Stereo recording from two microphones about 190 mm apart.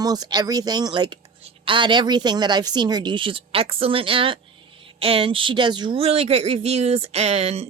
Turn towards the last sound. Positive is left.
turn(degrees=-35)  # may be behind; listen again after turning